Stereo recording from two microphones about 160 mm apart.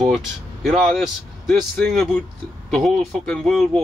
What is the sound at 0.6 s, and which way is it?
Speech, centre (ahead or behind).